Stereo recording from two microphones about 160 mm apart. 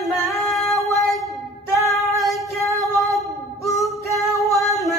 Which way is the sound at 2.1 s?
Centre (ahead or behind).